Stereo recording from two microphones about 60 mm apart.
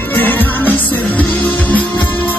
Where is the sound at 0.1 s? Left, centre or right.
Left.